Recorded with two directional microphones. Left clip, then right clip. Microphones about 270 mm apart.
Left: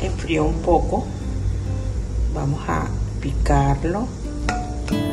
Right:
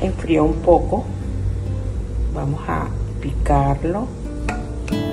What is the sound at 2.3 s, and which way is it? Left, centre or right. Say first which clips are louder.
Speech: even; centre.